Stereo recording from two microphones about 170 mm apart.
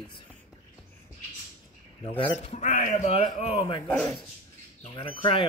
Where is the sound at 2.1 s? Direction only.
40° left (ahead or behind).